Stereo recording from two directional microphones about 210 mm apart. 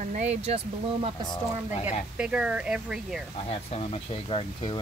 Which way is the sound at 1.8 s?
5° right (ahead or behind).